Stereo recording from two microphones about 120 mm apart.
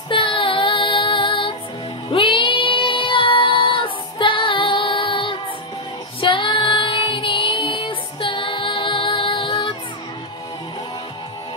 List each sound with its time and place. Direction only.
0.1 s child singing: 45° left (ahead or behind)
2.0 s music: 45° left (ahead or behind)
6.2 s child singing: 45° left (ahead or behind)